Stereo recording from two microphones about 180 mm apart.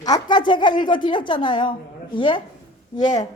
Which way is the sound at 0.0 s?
25° left (ahead or behind).